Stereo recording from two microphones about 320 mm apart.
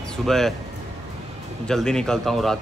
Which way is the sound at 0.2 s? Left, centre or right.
Centre.